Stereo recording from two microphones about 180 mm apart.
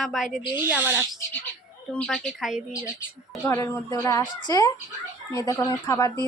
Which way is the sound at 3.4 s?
15° left (ahead or behind).